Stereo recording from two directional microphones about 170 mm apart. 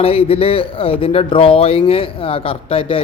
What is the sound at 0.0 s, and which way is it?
Speech, 35° left (ahead or behind).